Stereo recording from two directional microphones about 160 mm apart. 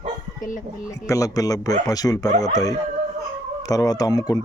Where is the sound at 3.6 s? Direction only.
20° left (ahead or behind).